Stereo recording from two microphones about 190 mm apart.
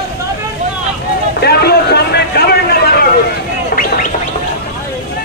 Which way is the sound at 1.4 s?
55° left (ahead or behind).